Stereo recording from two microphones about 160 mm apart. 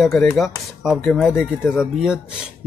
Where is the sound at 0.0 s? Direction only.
Centre (ahead or behind).